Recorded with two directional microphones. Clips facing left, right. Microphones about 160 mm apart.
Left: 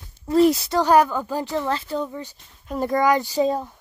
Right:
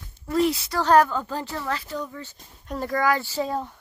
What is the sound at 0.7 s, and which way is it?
Speech, 15° left (ahead or behind).